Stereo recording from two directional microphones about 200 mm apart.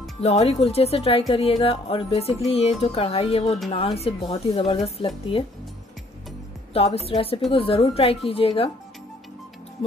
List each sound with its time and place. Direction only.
0.2 s speech: 30° left (ahead or behind)
6.7 s speech: 30° left (ahead or behind)